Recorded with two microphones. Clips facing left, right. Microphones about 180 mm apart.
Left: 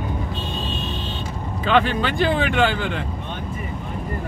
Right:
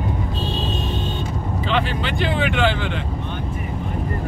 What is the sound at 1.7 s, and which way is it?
Speech, 45° left (ahead or behind).